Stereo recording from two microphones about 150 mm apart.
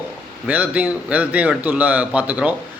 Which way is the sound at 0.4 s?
10° right (ahead or behind).